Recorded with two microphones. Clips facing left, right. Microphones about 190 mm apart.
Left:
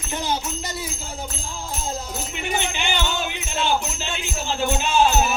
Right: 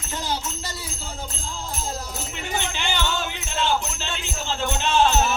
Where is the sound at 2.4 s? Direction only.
15° left (ahead or behind).